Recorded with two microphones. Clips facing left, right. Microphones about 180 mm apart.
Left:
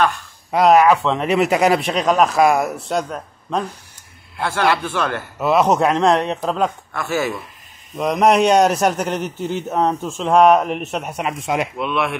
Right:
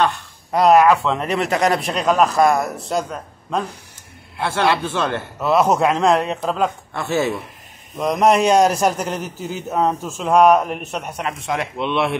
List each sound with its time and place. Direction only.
0.5 s a man's voice: centre (ahead or behind)
4.4 s a man's voice: 20° right (ahead or behind)
5.4 s a man's voice: centre (ahead or behind)
6.9 s a man's voice: 25° right (ahead or behind)
8.0 s a man's voice: centre (ahead or behind)
11.8 s a man's voice: 30° right (ahead or behind)